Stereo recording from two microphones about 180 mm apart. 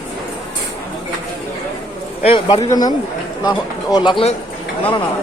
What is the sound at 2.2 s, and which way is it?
Speech, 30° left (ahead or behind).